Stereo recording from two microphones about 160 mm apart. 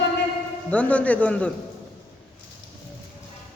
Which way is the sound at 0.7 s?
10° left (ahead or behind).